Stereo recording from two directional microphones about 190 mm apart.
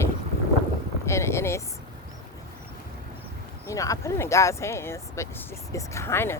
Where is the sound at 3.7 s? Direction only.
15° left (ahead or behind).